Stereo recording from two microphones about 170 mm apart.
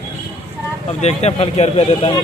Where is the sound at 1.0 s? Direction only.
40° left (ahead or behind).